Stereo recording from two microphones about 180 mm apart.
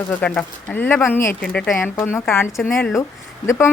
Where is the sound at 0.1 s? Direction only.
5° left (ahead or behind).